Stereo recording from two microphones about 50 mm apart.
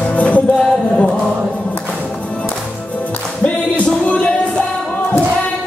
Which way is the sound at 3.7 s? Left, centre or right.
Left.